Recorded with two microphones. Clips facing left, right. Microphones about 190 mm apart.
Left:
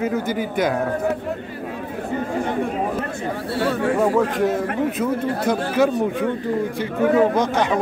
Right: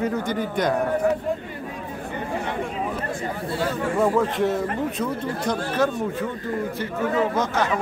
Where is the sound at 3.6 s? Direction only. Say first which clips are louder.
Left 5 dB; 70° left (ahead or behind).